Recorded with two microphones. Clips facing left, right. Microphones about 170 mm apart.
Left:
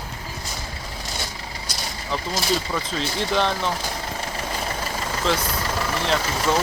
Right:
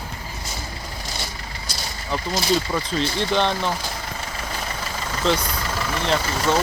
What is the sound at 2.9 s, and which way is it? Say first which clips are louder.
Speech: right 2 dB; 5° left (ahead or behind).